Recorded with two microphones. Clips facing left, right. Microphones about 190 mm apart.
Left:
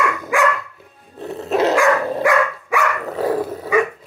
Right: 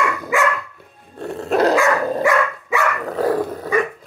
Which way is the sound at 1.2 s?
Centre (ahead or behind).